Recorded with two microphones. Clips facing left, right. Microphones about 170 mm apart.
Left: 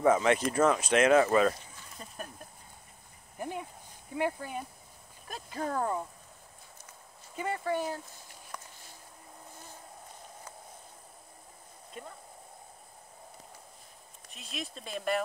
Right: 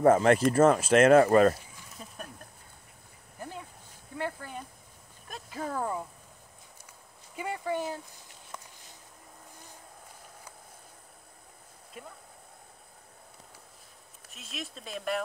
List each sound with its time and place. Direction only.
0.0 s speech: 45° right (ahead or behind)
1.5 s a sound: 5° right (ahead or behind)
3.3 s a sound: 15° left (ahead or behind)
4.1 s speech: 15° left (ahead or behind)
5.3 s speech: centre (ahead or behind)
7.3 s speech: 15° right (ahead or behind)
8.5 s a sound: 25° right (ahead or behind)
12.0 s speech: 5° right (ahead or behind)
14.3 s speech: centre (ahead or behind)